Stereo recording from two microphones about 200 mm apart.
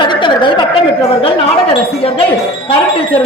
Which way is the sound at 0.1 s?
25° left (ahead or behind).